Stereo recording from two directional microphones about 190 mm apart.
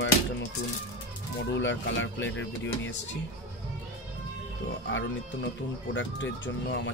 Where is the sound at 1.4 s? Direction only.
70° left (ahead or behind).